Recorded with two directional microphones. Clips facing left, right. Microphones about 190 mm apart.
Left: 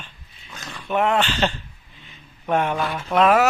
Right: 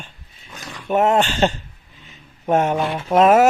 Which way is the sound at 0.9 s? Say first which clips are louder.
Right 4 dB; 45° right (ahead or behind).